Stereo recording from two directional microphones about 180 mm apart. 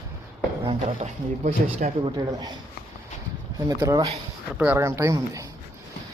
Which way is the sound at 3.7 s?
20° right (ahead or behind).